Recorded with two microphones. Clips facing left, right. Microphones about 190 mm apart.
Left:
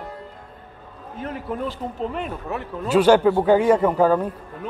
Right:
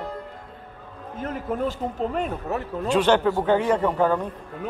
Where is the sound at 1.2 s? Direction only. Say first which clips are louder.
Right 1 dB; 45° right (ahead or behind).